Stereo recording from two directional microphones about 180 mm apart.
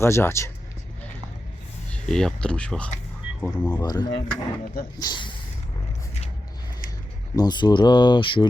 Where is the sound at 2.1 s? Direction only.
5° left (ahead or behind).